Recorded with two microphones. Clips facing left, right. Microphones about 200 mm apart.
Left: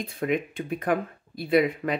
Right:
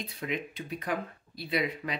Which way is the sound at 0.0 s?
50° left (ahead or behind).